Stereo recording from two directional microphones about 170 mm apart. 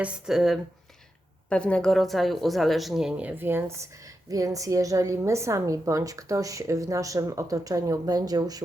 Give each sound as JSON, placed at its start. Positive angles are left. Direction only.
{"t": 0.0, "sound": "speech", "side_deg": -5}